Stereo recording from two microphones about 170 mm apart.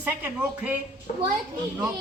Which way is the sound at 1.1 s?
45° left (ahead or behind).